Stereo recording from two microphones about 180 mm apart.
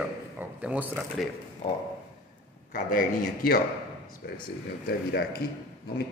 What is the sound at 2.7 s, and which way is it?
Speech, 50° left (ahead or behind).